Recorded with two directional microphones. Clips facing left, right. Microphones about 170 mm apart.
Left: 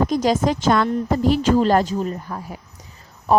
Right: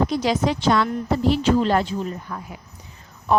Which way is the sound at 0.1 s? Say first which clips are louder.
Left 3 dB; 45° left (ahead or behind).